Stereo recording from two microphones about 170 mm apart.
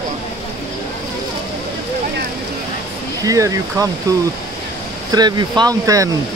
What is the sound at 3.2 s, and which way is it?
Speech, 20° right (ahead or behind).